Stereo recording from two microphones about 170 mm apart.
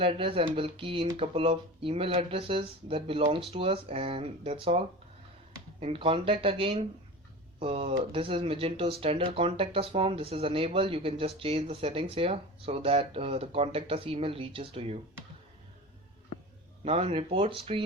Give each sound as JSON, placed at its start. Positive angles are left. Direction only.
{"t": 0.0, "sound": "speech", "side_deg": -35}
{"t": 5.8, "sound": "speech", "side_deg": -35}
{"t": 16.8, "sound": "speech", "side_deg": -35}